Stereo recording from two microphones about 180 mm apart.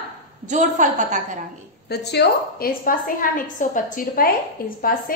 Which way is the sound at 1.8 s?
65° left (ahead or behind).